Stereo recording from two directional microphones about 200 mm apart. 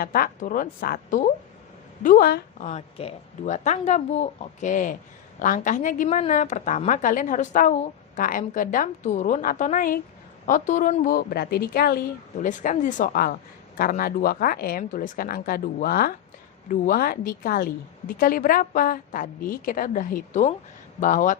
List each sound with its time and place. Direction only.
0.0 s a woman's voice: 45° left (ahead or behind)
2.6 s a woman's voice: 35° left (ahead or behind)